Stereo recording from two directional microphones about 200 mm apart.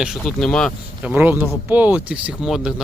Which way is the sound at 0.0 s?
Centre (ahead or behind).